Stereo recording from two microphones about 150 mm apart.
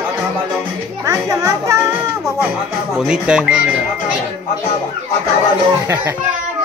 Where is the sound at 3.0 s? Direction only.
5° right (ahead or behind).